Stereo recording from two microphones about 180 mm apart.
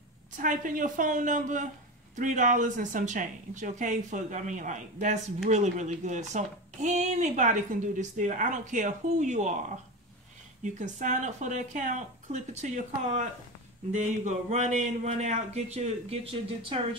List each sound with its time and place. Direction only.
0.4 s speech: 45° right (ahead or behind)
10.6 s a man's voice: 45° right (ahead or behind)